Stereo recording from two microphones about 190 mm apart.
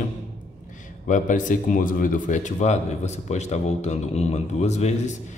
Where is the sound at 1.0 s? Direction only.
40° left (ahead or behind).